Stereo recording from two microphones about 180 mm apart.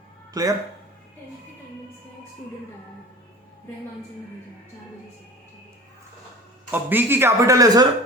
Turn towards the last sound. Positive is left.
turn(degrees=-20)  # may be behind; listen again after turning